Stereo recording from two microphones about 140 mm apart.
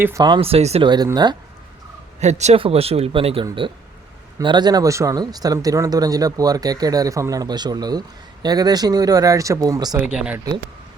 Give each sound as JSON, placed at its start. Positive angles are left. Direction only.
{"t": 0.0, "sound": "speech", "side_deg": -25}
{"t": 0.4, "sound": "speech", "side_deg": -45}
{"t": 0.9, "sound": "speech", "side_deg": -30}
{"t": 2.2, "sound": "speech", "side_deg": -55}
{"t": 10.0, "sound": "speech", "side_deg": -10}